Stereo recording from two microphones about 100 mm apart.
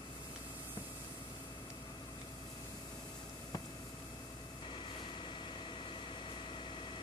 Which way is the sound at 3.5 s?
40° left (ahead or behind).